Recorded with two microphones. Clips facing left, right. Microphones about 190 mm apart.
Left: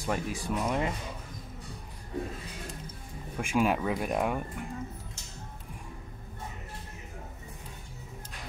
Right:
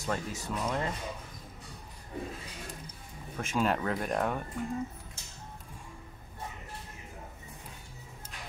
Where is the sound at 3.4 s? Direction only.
10° left (ahead or behind).